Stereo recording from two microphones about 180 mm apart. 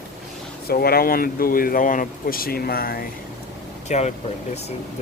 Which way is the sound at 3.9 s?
40° left (ahead or behind).